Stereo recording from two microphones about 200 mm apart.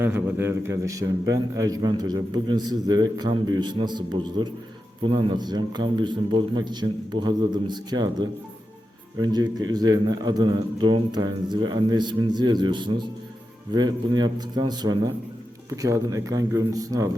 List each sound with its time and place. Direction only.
0.0 s a man's voice: 10° right (ahead or behind)